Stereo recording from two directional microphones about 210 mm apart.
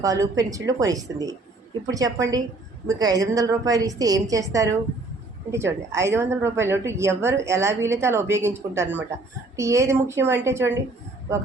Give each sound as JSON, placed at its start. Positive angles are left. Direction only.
{"t": 0.0, "sound": "a woman's voice", "side_deg": -15}